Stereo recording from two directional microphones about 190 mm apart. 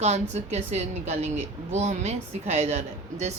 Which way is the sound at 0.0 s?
35° right (ahead or behind).